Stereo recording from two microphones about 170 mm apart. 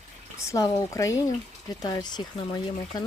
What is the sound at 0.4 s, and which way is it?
Speech, 20° left (ahead or behind).